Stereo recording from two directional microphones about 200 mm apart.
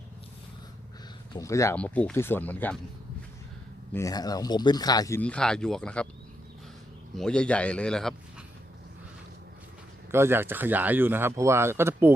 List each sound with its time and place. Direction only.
1.3 s speech: 15° left (ahead or behind)
3.9 s speech: 15° left (ahead or behind)
7.2 s speech: 5° left (ahead or behind)
10.1 s speech: 10° right (ahead or behind)